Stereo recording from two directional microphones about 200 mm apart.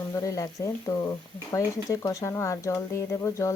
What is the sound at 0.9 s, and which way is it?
Speech, 20° left (ahead or behind).